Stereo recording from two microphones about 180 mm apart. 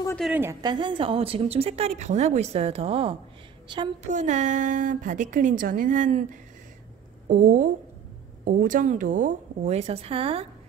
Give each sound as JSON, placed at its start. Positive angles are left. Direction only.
{"t": 0.2, "sound": "a woman's voice", "side_deg": -10}
{"t": 4.0, "sound": "a woman's voice", "side_deg": -40}
{"t": 7.3, "sound": "a woman's voice", "side_deg": -45}